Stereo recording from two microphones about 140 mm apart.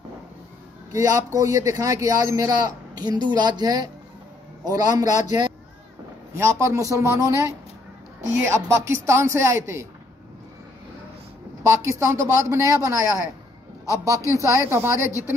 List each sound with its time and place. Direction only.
0.9 s a man's voice: 25° right (ahead or behind)
5.0 s a man's voice: 60° left (ahead or behind)
6.3 s a man's voice: 20° right (ahead or behind)
11.6 s a man's voice: 20° right (ahead or behind)
14.2 s speech: 20° left (ahead or behind)
14.5 s a woman's voice: 20° right (ahead or behind)